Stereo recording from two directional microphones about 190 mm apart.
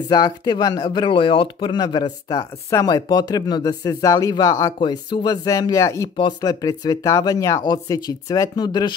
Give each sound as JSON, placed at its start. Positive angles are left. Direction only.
{"t": 0.1, "sound": "speech", "side_deg": 20}